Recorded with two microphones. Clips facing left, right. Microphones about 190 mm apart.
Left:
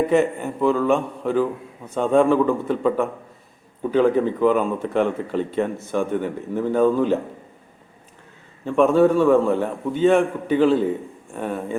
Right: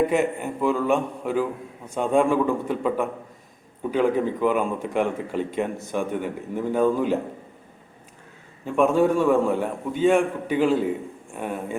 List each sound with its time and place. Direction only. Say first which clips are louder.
0.1 s speech: left 4 dB; 10° right (ahead or behind)
8.6 s speech: left 4 dB; 10° right (ahead or behind)